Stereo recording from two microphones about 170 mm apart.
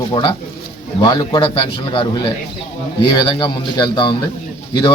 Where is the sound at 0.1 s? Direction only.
30° left (ahead or behind).